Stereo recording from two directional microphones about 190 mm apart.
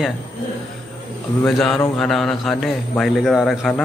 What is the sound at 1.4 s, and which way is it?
A man's voice, centre (ahead or behind).